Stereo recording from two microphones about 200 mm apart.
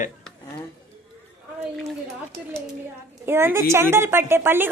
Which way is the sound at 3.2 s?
10° right (ahead or behind).